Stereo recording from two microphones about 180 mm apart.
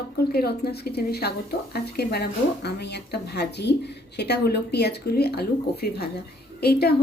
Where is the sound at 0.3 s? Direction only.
60° left (ahead or behind).